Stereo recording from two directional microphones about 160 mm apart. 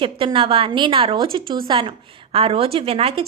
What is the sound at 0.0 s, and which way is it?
A woman's voice, 35° right (ahead or behind).